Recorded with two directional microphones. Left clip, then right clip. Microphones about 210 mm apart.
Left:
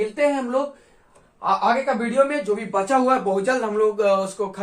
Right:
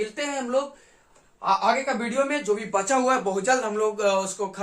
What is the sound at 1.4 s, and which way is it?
Speech, 5° right (ahead or behind).